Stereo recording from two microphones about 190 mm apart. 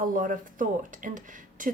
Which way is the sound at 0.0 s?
45° right (ahead or behind).